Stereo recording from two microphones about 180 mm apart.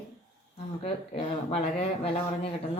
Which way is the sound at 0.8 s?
35° left (ahead or behind).